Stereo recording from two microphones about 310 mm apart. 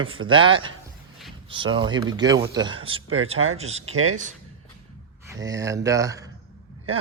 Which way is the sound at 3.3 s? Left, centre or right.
Right.